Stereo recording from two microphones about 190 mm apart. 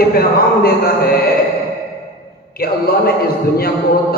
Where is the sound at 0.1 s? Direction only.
50° left (ahead or behind).